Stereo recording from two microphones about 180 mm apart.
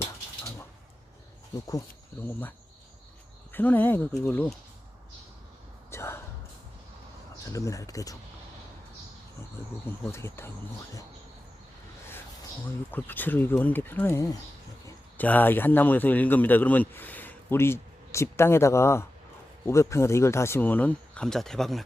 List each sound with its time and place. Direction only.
3.5 s speech: 10° left (ahead or behind)
5.9 s a sound: 15° left (ahead or behind)
7.5 s speech: 20° left (ahead or behind)
9.8 s speech: 15° left (ahead or behind)
12.6 s a man's voice: 10° left (ahead or behind)